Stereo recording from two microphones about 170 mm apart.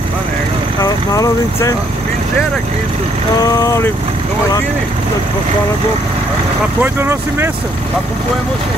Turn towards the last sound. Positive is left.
turn(degrees=-15)  # may be behind; listen again after turning